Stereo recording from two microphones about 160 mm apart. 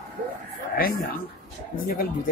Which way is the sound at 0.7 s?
65° left (ahead or behind).